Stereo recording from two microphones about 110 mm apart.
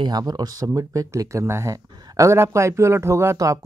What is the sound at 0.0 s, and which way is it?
Speech, 40° right (ahead or behind).